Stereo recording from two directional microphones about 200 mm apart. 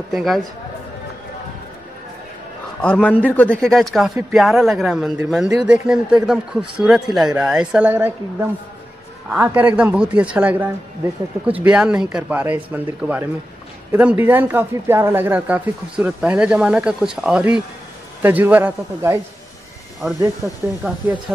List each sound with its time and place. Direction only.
0.1 s speech: centre (ahead or behind)
2.8 s a man's voice: 5° left (ahead or behind); by 19.1 s 10° right (ahead or behind)
20.4 s speech: 15° right (ahead or behind)